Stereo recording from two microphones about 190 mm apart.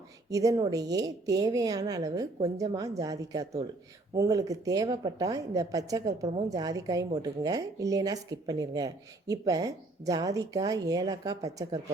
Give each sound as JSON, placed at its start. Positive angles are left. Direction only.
{"t": 0.3, "sound": "a woman's voice", "side_deg": -15}